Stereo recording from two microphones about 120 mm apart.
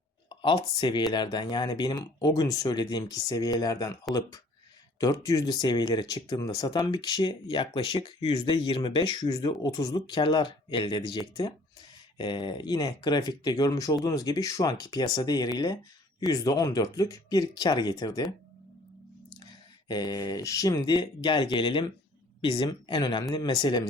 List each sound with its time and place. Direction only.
0.3 s speech: 40° left (ahead or behind)
4.9 s speech: 30° left (ahead or behind)
19.9 s speech: 35° left (ahead or behind)